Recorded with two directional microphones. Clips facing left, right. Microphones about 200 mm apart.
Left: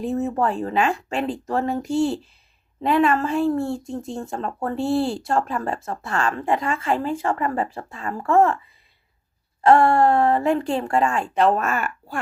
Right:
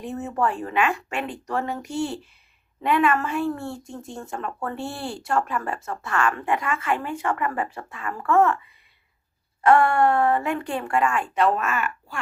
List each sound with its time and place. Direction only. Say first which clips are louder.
0.0 s speech: left 4 dB; 25° left (ahead or behind)
9.6 s speech: left 2 dB; 30° left (ahead or behind)